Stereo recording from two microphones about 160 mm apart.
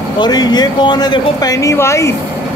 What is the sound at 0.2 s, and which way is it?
Speech, 25° left (ahead or behind).